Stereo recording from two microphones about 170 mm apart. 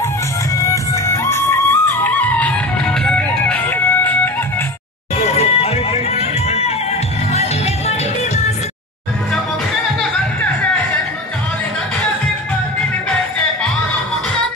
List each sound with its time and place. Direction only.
0.6 s music: 20° left (ahead or behind)
5.2 s music: 35° left (ahead or behind)